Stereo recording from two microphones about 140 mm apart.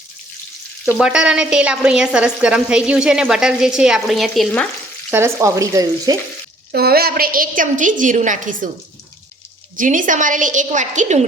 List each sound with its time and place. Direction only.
0.9 s a woman's voice: 5° right (ahead or behind)
5.1 s frying: 20° right (ahead or behind)
6.7 s a woman's voice: 90° right; by 8.7 s 70° right (ahead or behind)
9.7 s a woman's voice: 70° right (ahead or behind)